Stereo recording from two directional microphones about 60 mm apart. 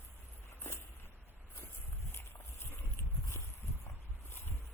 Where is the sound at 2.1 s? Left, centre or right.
Left.